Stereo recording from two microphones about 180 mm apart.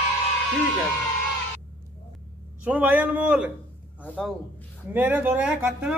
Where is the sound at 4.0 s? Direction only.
5° left (ahead or behind).